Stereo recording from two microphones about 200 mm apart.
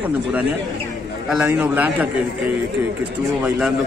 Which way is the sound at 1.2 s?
5° right (ahead or behind).